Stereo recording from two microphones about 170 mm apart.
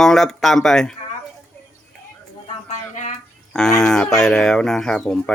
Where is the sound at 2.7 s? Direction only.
45° left (ahead or behind).